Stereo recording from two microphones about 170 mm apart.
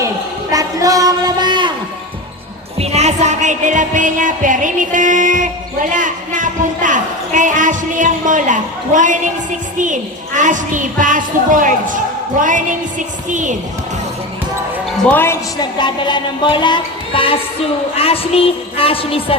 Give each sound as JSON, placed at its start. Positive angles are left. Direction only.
{"t": 0.5, "sound": "a sound", "side_deg": -20}
{"t": 2.7, "sound": "music", "side_deg": -40}
{"t": 5.9, "sound": "a woman's voice", "side_deg": -50}
{"t": 15.1, "sound": "a woman's voice", "side_deg": 15}
{"t": 15.6, "sound": "music", "side_deg": 25}
{"t": 17.9, "sound": "a woman's voice", "side_deg": 35}